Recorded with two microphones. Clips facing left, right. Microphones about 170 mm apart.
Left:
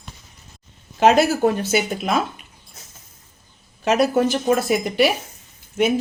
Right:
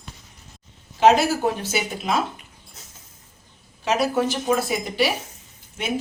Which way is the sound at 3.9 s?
55° left (ahead or behind).